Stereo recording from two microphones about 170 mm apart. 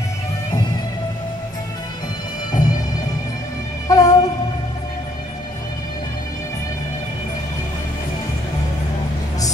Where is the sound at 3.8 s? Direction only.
20° left (ahead or behind).